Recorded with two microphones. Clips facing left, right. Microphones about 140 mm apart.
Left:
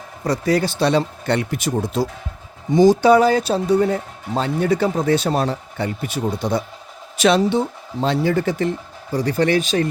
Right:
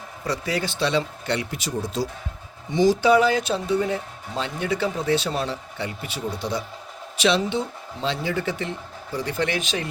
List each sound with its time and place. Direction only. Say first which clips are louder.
0.3 s speech: left 7 dB; 40° left (ahead or behind)